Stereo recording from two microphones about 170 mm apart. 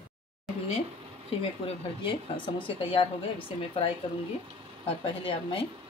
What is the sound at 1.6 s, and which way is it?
A woman's voice, 30° left (ahead or behind).